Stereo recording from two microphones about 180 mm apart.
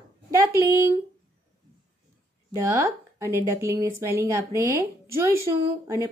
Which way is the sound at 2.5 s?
15° right (ahead or behind).